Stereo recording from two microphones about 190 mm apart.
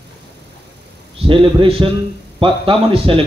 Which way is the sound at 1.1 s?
25° right (ahead or behind).